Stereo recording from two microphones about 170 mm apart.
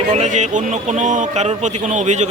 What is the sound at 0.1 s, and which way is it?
A man's voice, 45° right (ahead or behind).